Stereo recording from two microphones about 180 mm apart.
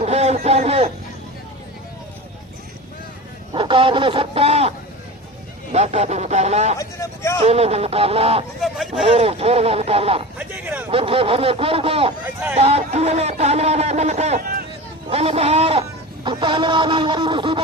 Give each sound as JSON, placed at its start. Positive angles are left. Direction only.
{"t": 0.0, "sound": "a sound", "side_deg": -35}
{"t": 3.5, "sound": "chicken", "side_deg": -25}
{"t": 5.7, "sound": "speech", "side_deg": -40}
{"t": 6.7, "sound": "speech", "side_deg": 15}
{"t": 7.4, "sound": "speech", "side_deg": -35}
{"t": 8.6, "sound": "speech", "side_deg": 0}
{"t": 9.0, "sound": "speech", "side_deg": -35}
{"t": 10.3, "sound": "a sound", "side_deg": -10}
{"t": 10.9, "sound": "speech", "side_deg": -30}
{"t": 12.2, "sound": "speech", "side_deg": -10}
{"t": 12.5, "sound": "speech", "side_deg": -35}
{"t": 15.1, "sound": "a sound", "side_deg": -35}